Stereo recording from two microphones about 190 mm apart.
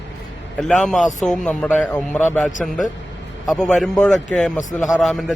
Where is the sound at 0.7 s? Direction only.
Centre (ahead or behind).